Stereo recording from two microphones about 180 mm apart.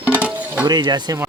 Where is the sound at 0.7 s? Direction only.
25° right (ahead or behind).